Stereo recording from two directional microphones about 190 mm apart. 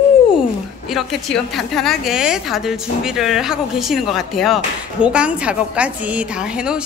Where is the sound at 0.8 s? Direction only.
Centre (ahead or behind).